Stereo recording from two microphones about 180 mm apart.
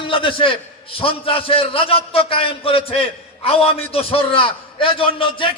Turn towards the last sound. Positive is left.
turn(degrees=30)  # may be behind; listen again after turning